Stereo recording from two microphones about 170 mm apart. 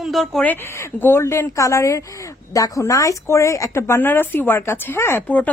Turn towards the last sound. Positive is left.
turn(degrees=10)  # may be behind; listen again after turning